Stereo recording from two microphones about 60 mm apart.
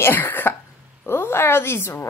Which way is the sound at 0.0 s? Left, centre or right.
Left.